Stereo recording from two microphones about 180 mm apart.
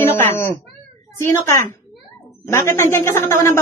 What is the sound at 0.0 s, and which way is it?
Cat, 15° left (ahead or behind).